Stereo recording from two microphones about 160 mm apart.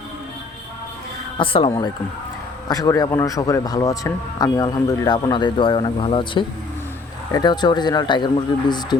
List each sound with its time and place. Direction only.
1.4 s speech: 35° left (ahead or behind)
2.6 s speech: 20° left (ahead or behind)